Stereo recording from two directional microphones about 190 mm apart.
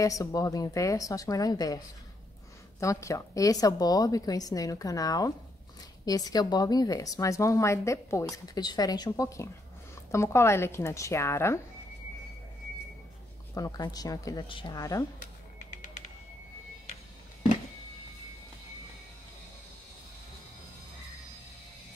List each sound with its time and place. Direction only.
0.0 s speech: 15° left (ahead or behind)
2.8 s a woman's voice: 15° left (ahead or behind)
13.6 s a woman's voice: 20° left (ahead or behind)
15.7 s music: 45° left (ahead or behind)